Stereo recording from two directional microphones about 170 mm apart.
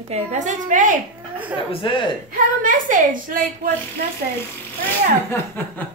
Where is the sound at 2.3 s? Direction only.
50° right (ahead or behind).